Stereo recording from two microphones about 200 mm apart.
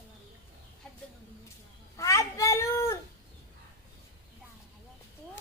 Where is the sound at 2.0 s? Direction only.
15° left (ahead or behind).